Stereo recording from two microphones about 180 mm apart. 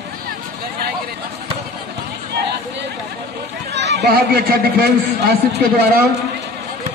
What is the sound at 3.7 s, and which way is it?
Speech, 70° right (ahead or behind).